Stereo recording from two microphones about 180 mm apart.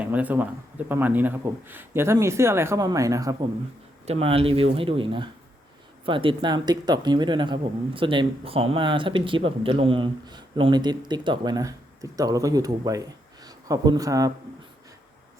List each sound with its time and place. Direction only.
0.0 s a man's voice: 10° right (ahead or behind)
4.0 s speech: 35° right (ahead or behind)